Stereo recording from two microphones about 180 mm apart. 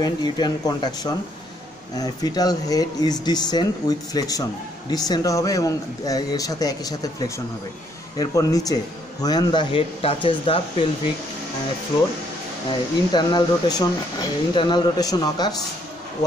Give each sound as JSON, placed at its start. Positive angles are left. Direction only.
{"t": 0.0, "sound": "speech", "side_deg": 20}
{"t": 13.1, "sound": "speech", "side_deg": 20}